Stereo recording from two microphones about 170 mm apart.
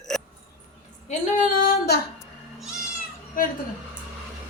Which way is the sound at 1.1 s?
55° left (ahead or behind).